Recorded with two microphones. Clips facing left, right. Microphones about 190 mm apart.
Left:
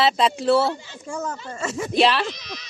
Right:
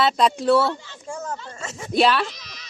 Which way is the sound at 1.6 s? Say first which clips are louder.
Left 12 dB; 75° left (ahead or behind).